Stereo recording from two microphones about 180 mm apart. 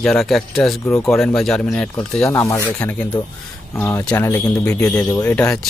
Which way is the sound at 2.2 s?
15° left (ahead or behind).